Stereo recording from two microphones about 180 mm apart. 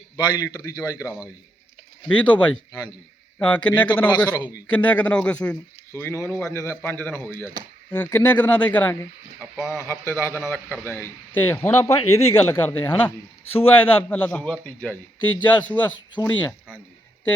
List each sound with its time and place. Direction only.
0.3 s a man's voice: 20° left (ahead or behind)
4.7 s a man's voice: 10° left (ahead or behind)